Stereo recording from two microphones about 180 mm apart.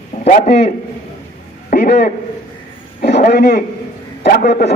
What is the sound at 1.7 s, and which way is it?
A man's voice, 65° left (ahead or behind).